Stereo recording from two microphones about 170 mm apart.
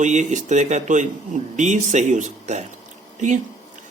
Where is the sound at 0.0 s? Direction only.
45° right (ahead or behind).